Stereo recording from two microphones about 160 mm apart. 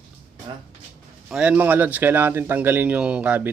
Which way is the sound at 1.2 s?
5° right (ahead or behind).